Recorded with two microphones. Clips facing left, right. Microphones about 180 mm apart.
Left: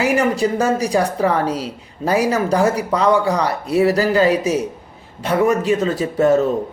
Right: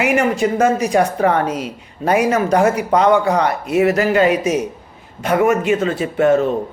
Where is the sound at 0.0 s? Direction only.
35° left (ahead or behind).